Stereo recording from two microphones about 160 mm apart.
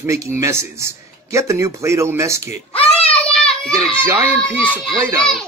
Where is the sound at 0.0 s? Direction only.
15° right (ahead or behind).